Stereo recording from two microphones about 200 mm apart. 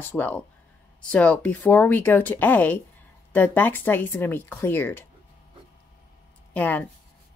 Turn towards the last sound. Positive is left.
turn(degrees=10)  # may be behind; listen again after turning